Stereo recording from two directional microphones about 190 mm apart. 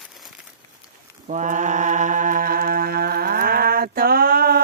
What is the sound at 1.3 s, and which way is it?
Mantra, 40° right (ahead or behind).